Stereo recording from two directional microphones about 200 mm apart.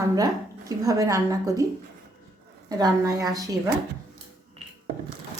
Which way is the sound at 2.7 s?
20° right (ahead or behind).